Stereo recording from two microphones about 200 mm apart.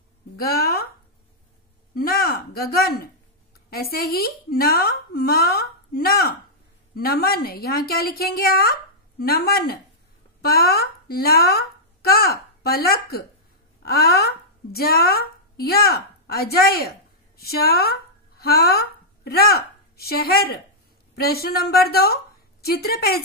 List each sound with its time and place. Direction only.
0.4 s a woman's voice: 50° left (ahead or behind)
2.0 s a woman's voice: 50° left (ahead or behind)